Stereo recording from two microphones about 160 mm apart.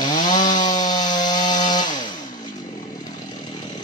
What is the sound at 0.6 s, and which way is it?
Wood, 25° left (ahead or behind).